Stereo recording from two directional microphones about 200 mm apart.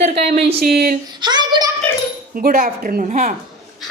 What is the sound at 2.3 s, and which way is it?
A woman's voice, 45° right (ahead or behind).